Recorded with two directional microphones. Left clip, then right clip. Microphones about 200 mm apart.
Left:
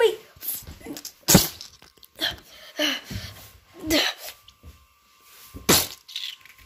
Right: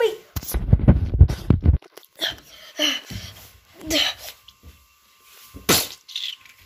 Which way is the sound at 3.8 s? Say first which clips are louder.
Right 1 dB; 15° left (ahead or behind).